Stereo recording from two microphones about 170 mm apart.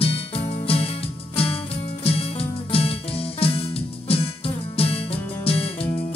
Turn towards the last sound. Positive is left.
turn(degrees=35)  # may be behind; listen again after turning